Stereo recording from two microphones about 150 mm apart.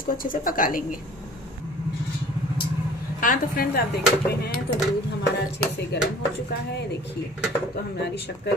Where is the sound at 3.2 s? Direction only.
70° left (ahead or behind).